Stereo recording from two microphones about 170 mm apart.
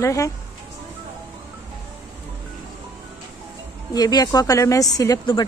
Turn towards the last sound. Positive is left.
turn(degrees=25)  # may be behind; listen again after turning